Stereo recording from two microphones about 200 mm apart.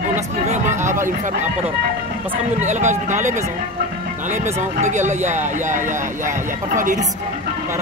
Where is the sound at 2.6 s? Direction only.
35° right (ahead or behind).